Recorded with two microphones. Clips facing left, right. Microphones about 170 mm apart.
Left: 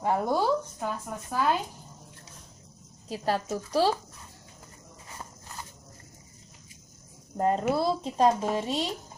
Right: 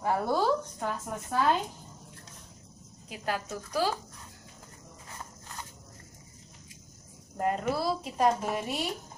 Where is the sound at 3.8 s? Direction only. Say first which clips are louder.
Left 5 dB; 30° left (ahead or behind).